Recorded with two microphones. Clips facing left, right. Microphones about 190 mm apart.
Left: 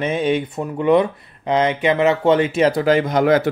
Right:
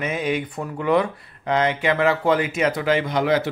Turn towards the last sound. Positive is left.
turn(degrees=50)  # may be behind; listen again after turning